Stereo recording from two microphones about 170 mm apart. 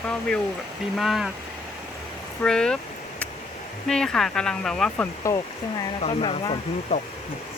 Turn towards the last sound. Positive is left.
turn(degrees=35)  # may be behind; listen again after turning